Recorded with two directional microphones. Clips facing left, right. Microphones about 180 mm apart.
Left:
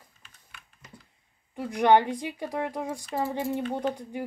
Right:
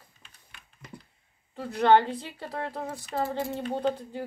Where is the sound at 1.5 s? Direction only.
15° left (ahead or behind).